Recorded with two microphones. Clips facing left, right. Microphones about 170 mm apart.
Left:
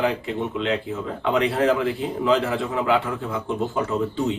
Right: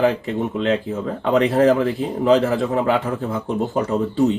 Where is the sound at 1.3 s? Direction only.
40° right (ahead or behind).